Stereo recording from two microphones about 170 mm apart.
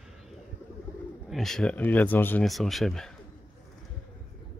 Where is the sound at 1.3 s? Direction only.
Centre (ahead or behind).